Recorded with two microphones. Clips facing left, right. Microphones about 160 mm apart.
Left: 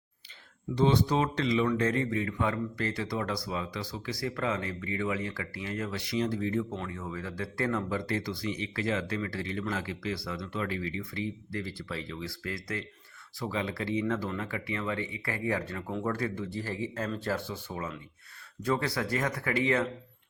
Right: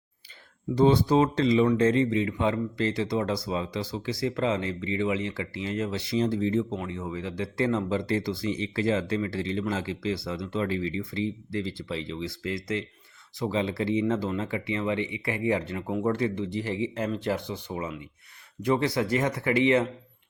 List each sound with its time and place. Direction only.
0.8 s speech: 35° right (ahead or behind)